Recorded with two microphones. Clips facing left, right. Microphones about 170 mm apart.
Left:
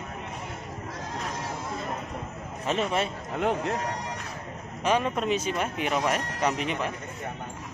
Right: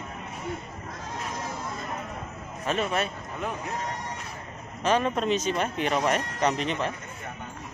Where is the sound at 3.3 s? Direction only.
75° left (ahead or behind).